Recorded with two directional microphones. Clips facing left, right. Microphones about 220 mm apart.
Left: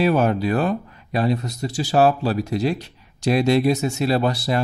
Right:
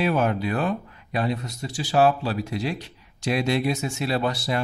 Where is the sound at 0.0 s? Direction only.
35° left (ahead or behind).